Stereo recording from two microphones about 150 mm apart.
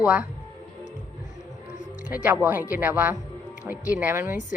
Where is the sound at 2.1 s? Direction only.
10° right (ahead or behind).